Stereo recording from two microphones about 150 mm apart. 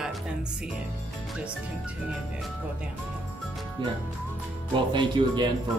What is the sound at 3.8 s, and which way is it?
Speech, 30° right (ahead or behind).